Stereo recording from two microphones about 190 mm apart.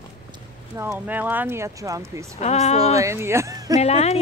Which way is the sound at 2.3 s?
35° left (ahead or behind).